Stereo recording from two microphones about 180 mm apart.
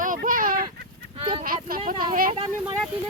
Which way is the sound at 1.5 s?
50° right (ahead or behind).